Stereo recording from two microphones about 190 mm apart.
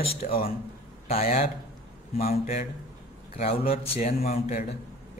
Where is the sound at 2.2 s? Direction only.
50° left (ahead or behind).